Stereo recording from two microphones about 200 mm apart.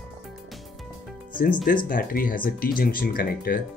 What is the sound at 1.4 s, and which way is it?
Speech, 45° left (ahead or behind).